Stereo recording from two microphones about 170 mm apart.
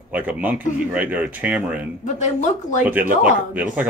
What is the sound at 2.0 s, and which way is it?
Speech, 45° left (ahead or behind).